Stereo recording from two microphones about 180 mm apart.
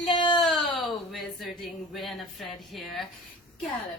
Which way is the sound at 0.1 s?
25° left (ahead or behind).